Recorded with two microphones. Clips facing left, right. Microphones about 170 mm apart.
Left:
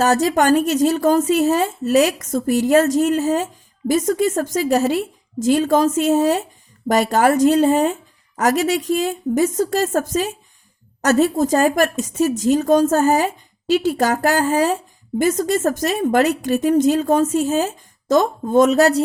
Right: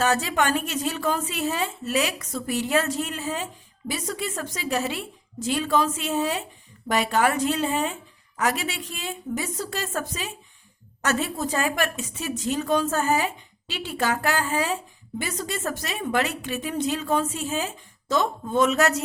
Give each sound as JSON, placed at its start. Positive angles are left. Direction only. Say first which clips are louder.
{"t": 0.0, "sound": "a woman's voice", "louder": "left 7 dB", "side_deg": 40}